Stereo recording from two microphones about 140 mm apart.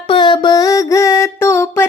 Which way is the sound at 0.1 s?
35° left (ahead or behind).